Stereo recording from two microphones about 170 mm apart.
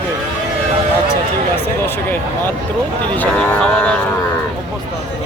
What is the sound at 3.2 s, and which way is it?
Speech, 5° left (ahead or behind).